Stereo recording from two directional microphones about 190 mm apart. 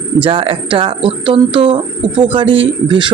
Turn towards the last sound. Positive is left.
turn(degrees=-25)  # may be behind; listen again after turning